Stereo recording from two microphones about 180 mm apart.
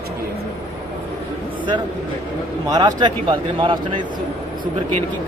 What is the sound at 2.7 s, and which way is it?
Speech, 25° right (ahead or behind).